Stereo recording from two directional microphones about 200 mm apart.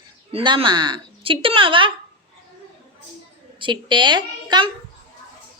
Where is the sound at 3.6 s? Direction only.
25° right (ahead or behind).